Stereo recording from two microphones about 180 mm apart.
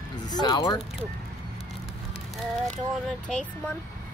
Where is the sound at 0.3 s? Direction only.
20° left (ahead or behind).